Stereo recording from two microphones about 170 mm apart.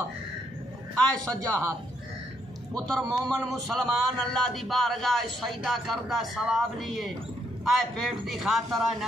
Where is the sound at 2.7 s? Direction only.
Centre (ahead or behind).